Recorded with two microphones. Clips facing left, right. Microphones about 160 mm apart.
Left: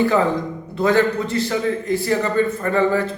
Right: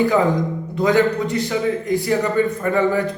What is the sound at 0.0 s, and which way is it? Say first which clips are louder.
A man's voice: right 1 dB; 15° right (ahead or behind).